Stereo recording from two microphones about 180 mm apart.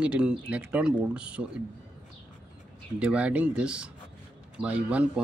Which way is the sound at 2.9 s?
5° right (ahead or behind).